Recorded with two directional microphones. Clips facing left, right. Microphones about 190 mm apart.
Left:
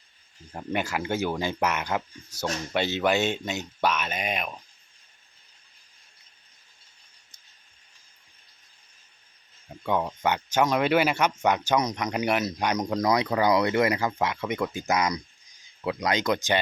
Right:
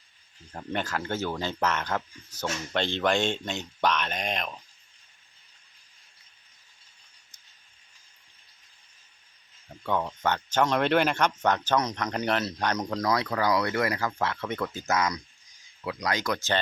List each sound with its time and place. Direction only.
0.5 s speech: 10° left (ahead or behind)
9.8 s speech: 15° left (ahead or behind)